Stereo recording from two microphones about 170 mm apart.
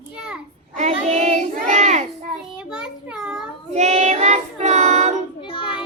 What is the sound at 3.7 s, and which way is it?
Child singing, 40° right (ahead or behind).